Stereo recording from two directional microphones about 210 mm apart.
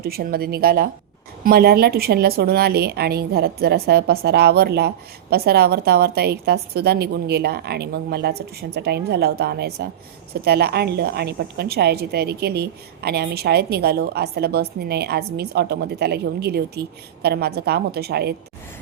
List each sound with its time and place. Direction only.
0.0 s a woman's voice: 45° right (ahead or behind)